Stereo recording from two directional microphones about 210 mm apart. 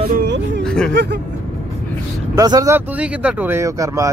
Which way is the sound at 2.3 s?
15° right (ahead or behind).